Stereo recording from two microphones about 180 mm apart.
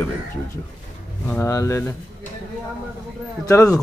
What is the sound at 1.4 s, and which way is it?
Speech, 15° left (ahead or behind).